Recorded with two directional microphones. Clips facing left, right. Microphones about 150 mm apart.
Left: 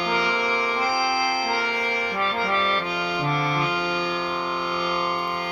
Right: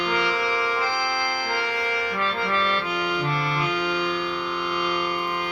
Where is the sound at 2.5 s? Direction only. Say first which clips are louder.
Even; 35° left (ahead or behind).